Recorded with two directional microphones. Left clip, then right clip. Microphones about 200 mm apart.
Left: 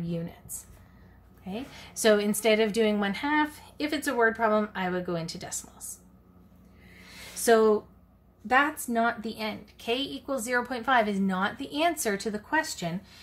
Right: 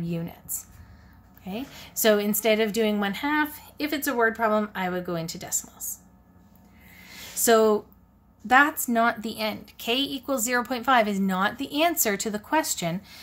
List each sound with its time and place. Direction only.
0.1 s a woman's voice: 25° right (ahead or behind)
1.4 s a woman's voice: 15° right (ahead or behind)
7.1 s a sound: 20° right (ahead or behind)
8.5 s a woman's voice: 25° right (ahead or behind)